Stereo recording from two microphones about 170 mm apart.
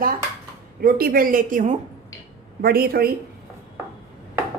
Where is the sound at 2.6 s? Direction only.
65° right (ahead or behind).